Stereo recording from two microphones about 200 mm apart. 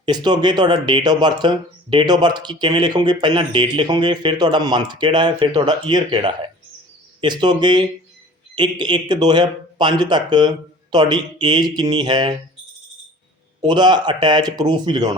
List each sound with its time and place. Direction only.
0.0 s speech: 20° right (ahead or behind)
13.7 s speech: 20° right (ahead or behind)